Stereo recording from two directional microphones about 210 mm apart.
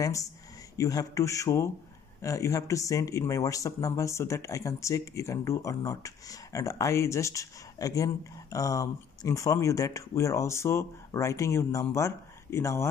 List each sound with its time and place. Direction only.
0.0 s speech: 15° left (ahead or behind)